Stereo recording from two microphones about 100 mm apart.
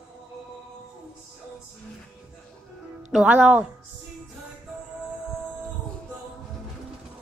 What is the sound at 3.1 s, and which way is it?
Speech, 10° right (ahead or behind).